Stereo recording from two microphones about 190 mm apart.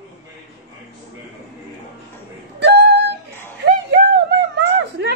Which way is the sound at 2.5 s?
65° right (ahead or behind).